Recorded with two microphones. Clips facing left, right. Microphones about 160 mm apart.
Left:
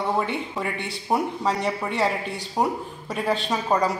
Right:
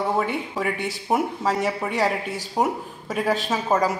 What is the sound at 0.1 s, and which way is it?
A woman's voice, 5° right (ahead or behind).